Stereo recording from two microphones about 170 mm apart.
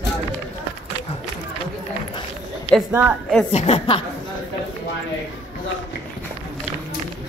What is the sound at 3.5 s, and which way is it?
Speech, 40° left (ahead or behind).